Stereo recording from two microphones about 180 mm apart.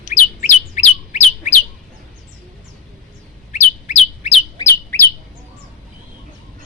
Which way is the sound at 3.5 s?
40° left (ahead or behind).